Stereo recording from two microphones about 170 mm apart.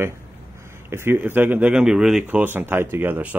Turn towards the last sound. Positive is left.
turn(degrees=-10)  # may be behind; listen again after turning